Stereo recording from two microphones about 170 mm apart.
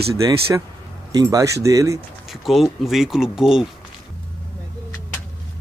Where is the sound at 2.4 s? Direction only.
Centre (ahead or behind).